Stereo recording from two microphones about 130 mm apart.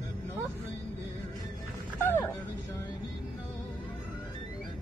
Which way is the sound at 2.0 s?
20° left (ahead or behind).